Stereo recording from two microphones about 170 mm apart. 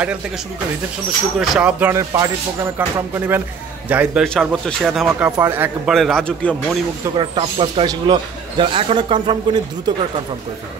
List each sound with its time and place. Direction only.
1.4 s speech: 5° right (ahead or behind)
4.2 s speech: 5° left (ahead or behind)
5.9 s speech: 5° left (ahead or behind)
7.2 s speech: 30° right (ahead or behind)